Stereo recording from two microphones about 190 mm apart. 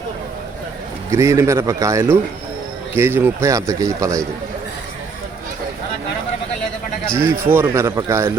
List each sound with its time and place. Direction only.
1.1 s a man's voice: 15° right (ahead or behind)
7.1 s a man's voice: 15° right (ahead or behind)